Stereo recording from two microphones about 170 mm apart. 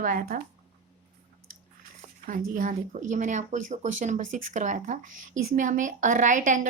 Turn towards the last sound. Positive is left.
turn(degrees=-50)  # may be behind; listen again after turning